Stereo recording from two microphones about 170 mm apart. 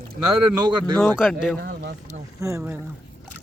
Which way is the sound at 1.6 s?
65° right (ahead or behind).